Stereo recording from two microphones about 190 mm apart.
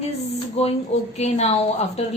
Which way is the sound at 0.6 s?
35° left (ahead or behind).